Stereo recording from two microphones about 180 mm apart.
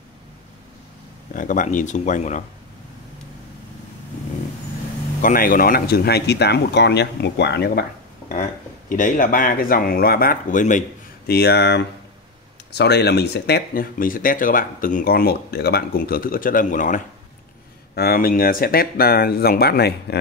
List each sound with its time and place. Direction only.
1.3 s speech: 45° left (ahead or behind)
5.2 s speech: 50° left (ahead or behind)
8.3 s speech: 45° left (ahead or behind)
11.2 s speech: 60° left (ahead or behind); by 17.0 s 45° left (ahead or behind)
17.9 s speech: 55° left (ahead or behind)